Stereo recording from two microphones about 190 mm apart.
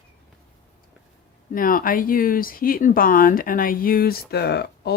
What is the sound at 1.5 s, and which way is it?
Speech, 45° left (ahead or behind).